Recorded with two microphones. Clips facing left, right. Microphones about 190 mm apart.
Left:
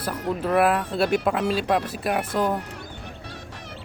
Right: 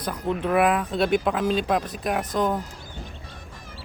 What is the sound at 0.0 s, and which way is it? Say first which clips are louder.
Speech: even; 5° left (ahead or behind).